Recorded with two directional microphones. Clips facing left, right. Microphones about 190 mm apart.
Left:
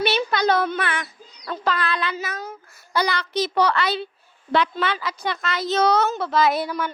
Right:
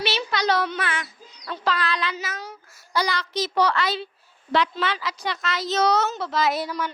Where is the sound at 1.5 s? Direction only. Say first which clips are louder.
Left 1 dB; 50° left (ahead or behind).